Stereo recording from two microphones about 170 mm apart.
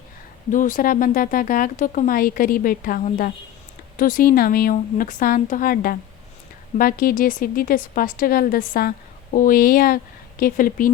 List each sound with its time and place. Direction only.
0.5 s speech: 50° left (ahead or behind)